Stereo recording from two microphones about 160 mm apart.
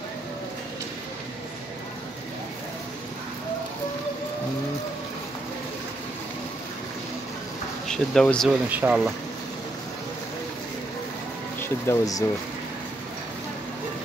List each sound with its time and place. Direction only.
7.9 s speech: 5° left (ahead or behind)
8.6 s speech: 10° right (ahead or behind)
11.8 s speech: 20° left (ahead or behind)